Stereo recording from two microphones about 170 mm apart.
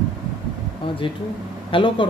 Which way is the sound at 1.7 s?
30° left (ahead or behind).